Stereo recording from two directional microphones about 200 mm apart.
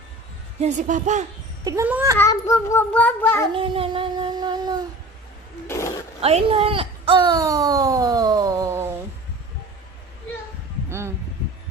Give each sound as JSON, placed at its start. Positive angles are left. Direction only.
{"t": 0.6, "sound": "a woman's voice", "side_deg": -40}
{"t": 1.6, "sound": "speech", "side_deg": -15}
{"t": 2.1, "sound": "a child's voice", "side_deg": 15}
{"t": 3.5, "sound": "child singing", "side_deg": -25}
{"t": 5.6, "sound": "a sound", "side_deg": 15}
{"t": 6.2, "sound": "speech", "side_deg": -30}
{"t": 10.8, "sound": "a sound", "side_deg": -15}